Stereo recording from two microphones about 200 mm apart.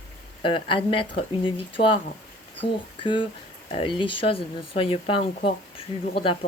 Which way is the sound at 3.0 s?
25° left (ahead or behind).